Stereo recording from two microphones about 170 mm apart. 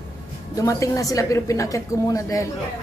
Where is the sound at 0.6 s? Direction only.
20° left (ahead or behind).